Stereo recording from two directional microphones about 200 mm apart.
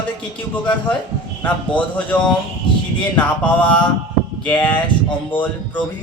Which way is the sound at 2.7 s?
25° left (ahead or behind).